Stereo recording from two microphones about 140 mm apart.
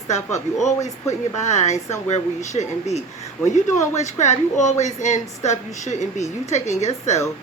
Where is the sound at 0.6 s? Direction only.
55° left (ahead or behind).